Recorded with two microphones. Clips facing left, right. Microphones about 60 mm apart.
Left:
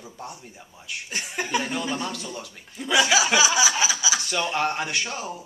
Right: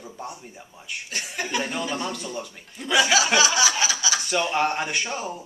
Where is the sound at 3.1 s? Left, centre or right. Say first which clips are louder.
Even; centre.